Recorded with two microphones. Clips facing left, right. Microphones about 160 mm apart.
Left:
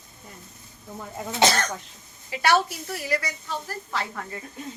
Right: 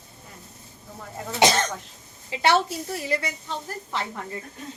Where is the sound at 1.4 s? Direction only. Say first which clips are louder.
Right 2 dB; 20° right (ahead or behind).